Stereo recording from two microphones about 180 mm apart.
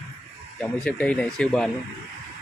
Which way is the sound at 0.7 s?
5° left (ahead or behind).